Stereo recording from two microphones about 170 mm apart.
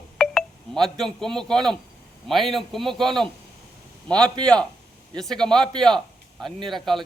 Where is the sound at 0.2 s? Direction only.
5° left (ahead or behind).